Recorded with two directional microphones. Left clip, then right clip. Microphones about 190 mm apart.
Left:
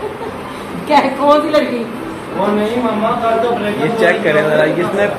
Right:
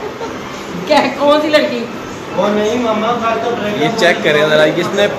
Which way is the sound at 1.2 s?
5° left (ahead or behind).